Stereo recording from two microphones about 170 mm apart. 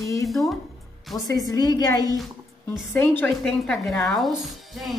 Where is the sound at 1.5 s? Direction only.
20° left (ahead or behind).